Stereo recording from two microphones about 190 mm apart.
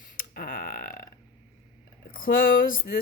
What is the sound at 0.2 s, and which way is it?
Burping, 45° left (ahead or behind).